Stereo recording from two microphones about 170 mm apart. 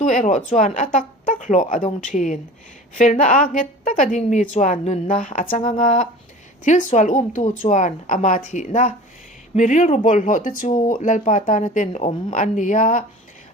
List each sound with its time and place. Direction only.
0.0 s speech: 50° left (ahead or behind)